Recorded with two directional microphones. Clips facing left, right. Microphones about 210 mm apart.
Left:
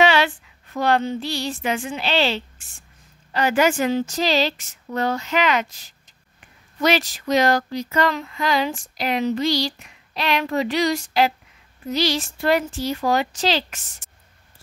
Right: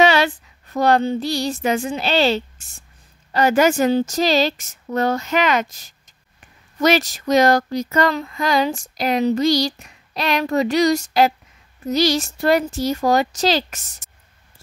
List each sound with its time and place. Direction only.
0.0 s female singing: 40° right (ahead or behind)
3.3 s speech: 40° right (ahead or behind)